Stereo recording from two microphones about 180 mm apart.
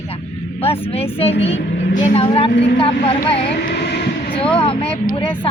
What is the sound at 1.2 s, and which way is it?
Speech, 35° left (ahead or behind).